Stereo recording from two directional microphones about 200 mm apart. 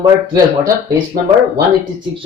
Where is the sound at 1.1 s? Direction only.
40° right (ahead or behind).